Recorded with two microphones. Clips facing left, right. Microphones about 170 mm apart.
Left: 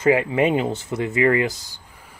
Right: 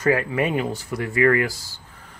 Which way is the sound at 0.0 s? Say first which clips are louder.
Left 3 dB; 20° left (ahead or behind).